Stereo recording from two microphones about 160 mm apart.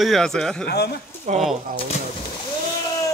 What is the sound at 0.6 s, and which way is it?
Speech, 85° left.